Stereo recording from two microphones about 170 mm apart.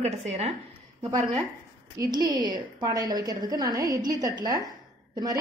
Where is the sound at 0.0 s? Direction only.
35° right (ahead or behind).